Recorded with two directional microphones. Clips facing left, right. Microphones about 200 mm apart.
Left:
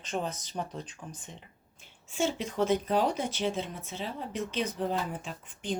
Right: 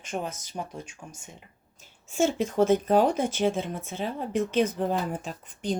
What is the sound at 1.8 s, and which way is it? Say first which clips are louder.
Speech: right 5 dB; 45° right (ahead or behind).